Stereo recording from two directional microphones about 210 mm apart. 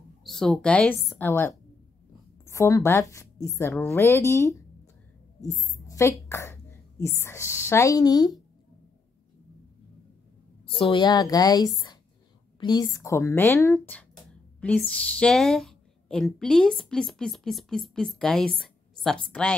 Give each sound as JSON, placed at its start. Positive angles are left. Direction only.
{"t": 0.2, "sound": "a woman's voice", "side_deg": 0}
{"t": 10.8, "sound": "a woman's voice", "side_deg": 20}